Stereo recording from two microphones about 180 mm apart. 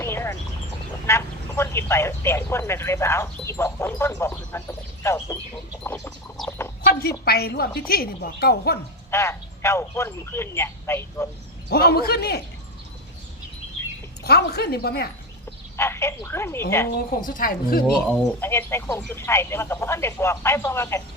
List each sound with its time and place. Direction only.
0.0 s a sound: 15° left (ahead or behind)
1.0 s speech: 15° left (ahead or behind)
7.3 s a woman's voice: 60° left (ahead or behind)
9.0 s speech: 15° left (ahead or behind)
11.7 s a woman's voice: 60° left (ahead or behind)
14.3 s a woman's voice: 60° left (ahead or behind)
15.8 s speech: 15° left (ahead or behind)
17.2 s speech: 50° left (ahead or behind)
18.1 s speech: 10° left (ahead or behind)